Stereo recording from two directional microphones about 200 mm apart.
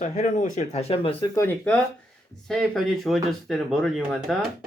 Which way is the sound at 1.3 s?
10° left (ahead or behind).